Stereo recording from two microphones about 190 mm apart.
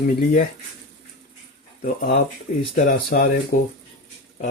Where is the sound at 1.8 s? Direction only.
45° left (ahead or behind).